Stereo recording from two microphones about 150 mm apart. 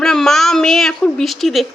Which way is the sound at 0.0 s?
Centre (ahead or behind).